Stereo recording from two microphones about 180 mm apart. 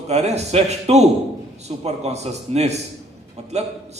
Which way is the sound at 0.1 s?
35° right (ahead or behind).